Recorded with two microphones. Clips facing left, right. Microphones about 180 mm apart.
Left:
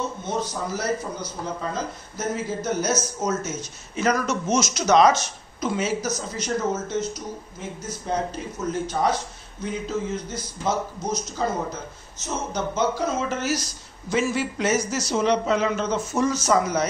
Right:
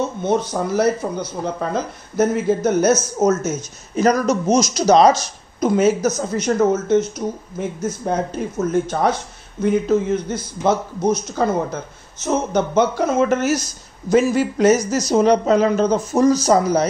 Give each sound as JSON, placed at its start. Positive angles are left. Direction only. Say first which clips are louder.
{"t": 0.3, "sound": "speech", "louder": "right 9 dB", "side_deg": -60}
{"t": 14.0, "sound": "speech", "louder": "right 8 dB", "side_deg": -40}